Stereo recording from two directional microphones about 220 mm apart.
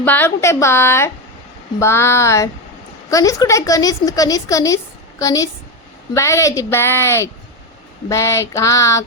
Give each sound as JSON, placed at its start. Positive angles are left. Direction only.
{"t": 0.0, "sound": "a woman's voice", "side_deg": 10}